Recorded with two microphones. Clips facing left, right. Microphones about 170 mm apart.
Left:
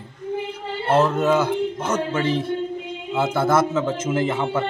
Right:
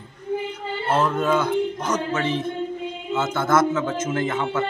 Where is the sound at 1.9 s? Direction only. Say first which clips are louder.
Left 2 dB; 30° left (ahead or behind).